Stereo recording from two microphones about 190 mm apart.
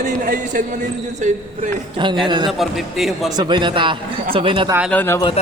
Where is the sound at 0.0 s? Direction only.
45° right (ahead or behind).